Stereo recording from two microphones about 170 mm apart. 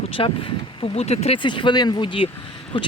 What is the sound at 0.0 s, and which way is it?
Speech, 30° left (ahead or behind).